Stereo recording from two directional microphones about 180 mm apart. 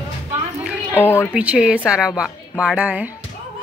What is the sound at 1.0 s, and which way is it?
Speech, 15° left (ahead or behind).